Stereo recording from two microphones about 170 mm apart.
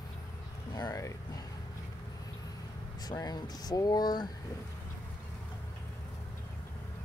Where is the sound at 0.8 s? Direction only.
20° left (ahead or behind).